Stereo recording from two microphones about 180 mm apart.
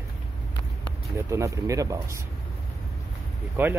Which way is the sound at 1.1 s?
15° right (ahead or behind).